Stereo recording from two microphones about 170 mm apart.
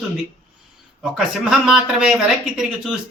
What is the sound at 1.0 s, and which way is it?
A man's voice, 5° right (ahead or behind).